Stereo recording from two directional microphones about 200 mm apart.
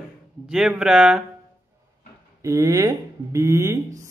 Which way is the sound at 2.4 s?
15° right (ahead or behind).